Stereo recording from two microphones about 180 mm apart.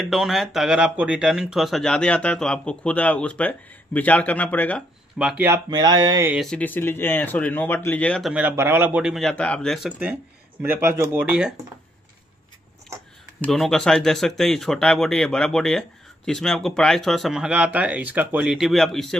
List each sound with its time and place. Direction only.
0.0 s speech: centre (ahead or behind)
5.2 s speech: 10° right (ahead or behind)
5.7 s speech: 20° right (ahead or behind)
6.3 s speech: 5° left (ahead or behind)
10.6 s speech: 15° right (ahead or behind)
13.5 s speech: centre (ahead or behind)